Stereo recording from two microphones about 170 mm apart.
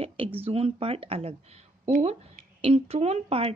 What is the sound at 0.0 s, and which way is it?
Speech, 35° right (ahead or behind).